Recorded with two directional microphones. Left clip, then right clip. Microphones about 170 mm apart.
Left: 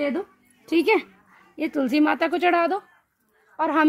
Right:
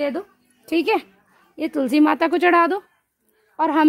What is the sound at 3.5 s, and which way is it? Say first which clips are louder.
Speech: right 3 dB; 40° right (ahead or behind).